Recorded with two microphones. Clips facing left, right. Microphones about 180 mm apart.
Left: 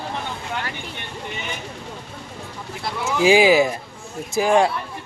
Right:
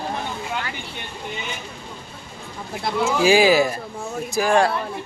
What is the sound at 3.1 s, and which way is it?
Speech, 20° left (ahead or behind).